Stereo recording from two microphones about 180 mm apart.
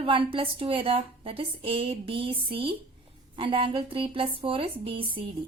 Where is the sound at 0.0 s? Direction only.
30° right (ahead or behind).